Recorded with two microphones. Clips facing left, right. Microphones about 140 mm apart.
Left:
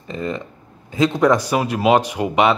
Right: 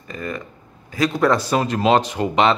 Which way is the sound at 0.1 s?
25° left (ahead or behind).